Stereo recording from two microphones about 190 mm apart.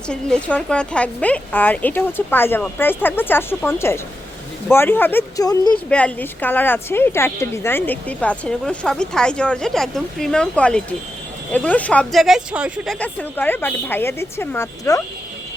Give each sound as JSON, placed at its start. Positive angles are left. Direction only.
{"t": 0.1, "sound": "a woman's voice", "side_deg": 5}
{"t": 5.7, "sound": "a woman's voice", "side_deg": 5}